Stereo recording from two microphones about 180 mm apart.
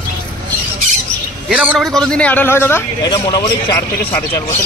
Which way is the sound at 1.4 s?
5° right (ahead or behind).